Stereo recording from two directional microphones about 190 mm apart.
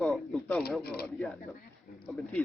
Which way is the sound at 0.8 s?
55° left (ahead or behind).